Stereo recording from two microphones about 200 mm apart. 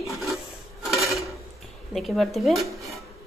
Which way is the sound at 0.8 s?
Centre (ahead or behind).